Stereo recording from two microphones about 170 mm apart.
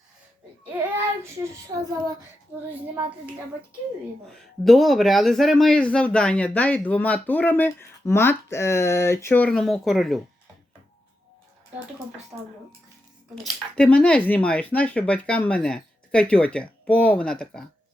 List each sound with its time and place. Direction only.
0.6 s child singing: 10° right (ahead or behind)
4.3 s speech: centre (ahead or behind)
12.3 s speech: 20° right (ahead or behind)
13.3 s speech: centre (ahead or behind)